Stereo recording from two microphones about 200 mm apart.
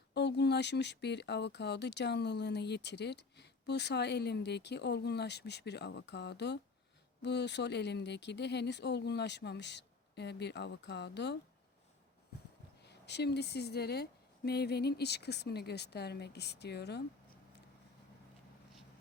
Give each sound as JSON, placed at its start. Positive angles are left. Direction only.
{"t": 0.1, "sound": "speech", "side_deg": 60}
{"t": 12.8, "sound": "speech", "side_deg": 55}